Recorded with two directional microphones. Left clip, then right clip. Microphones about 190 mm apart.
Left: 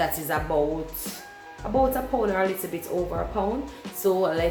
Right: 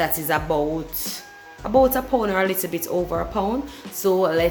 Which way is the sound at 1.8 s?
55° right (ahead or behind).